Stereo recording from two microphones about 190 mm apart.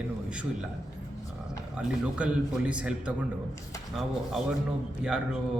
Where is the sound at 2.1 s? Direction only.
5° right (ahead or behind).